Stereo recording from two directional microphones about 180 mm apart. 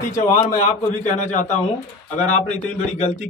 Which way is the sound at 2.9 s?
40° left (ahead or behind).